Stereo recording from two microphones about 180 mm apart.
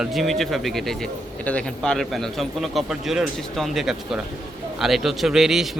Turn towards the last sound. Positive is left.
turn(degrees=0)  # may be behind; listen again after turning